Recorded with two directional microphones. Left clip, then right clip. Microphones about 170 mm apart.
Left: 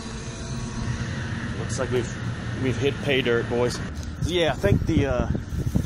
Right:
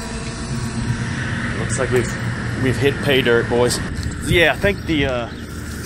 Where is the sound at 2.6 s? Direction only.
5° left (ahead or behind).